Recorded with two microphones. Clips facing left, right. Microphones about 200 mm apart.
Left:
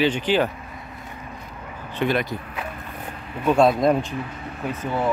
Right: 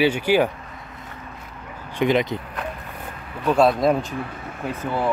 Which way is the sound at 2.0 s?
20° right (ahead or behind).